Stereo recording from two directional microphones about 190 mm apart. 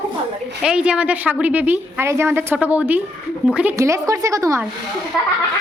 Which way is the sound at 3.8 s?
15° right (ahead or behind).